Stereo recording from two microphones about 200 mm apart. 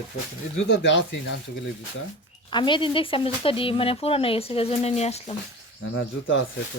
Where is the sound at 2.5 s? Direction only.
25° left (ahead or behind).